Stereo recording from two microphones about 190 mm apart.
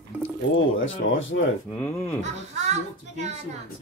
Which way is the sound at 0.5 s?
90° left.